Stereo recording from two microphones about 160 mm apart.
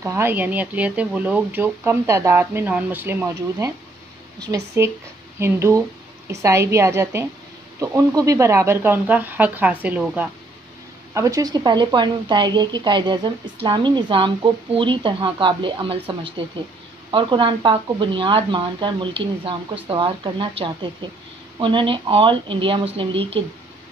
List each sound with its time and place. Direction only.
0.0 s a woman's voice: 15° right (ahead or behind)
11.1 s a woman's voice: 20° right (ahead or behind)